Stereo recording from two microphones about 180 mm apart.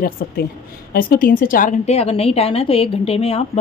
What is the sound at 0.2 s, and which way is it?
A woman's voice, 60° left (ahead or behind).